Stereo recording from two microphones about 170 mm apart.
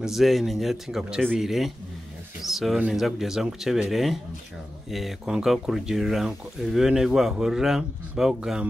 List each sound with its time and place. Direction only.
0.0 s speech: centre (ahead or behind)